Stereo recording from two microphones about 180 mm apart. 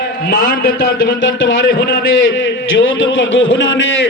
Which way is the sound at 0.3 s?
55° left (ahead or behind).